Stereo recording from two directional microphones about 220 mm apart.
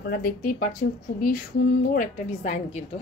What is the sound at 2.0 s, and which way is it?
Speech, 30° left (ahead or behind).